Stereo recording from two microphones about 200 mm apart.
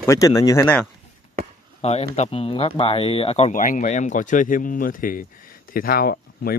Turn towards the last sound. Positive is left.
turn(degrees=45)  # may be behind; listen again after turning